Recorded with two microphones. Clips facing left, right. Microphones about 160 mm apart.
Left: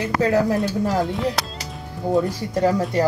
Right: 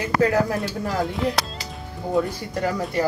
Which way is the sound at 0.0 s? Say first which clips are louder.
Left 1 dB; 25° left (ahead or behind).